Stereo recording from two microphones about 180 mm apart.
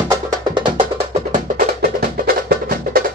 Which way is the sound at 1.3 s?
55° right (ahead or behind).